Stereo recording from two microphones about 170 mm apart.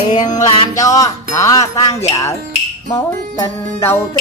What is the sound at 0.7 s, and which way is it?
Music, 20° left (ahead or behind).